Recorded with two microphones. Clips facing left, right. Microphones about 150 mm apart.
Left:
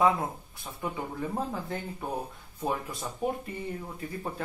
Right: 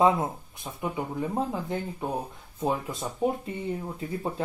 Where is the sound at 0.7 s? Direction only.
15° right (ahead or behind).